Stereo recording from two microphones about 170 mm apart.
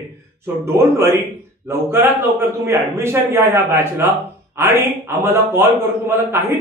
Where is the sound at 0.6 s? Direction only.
15° right (ahead or behind).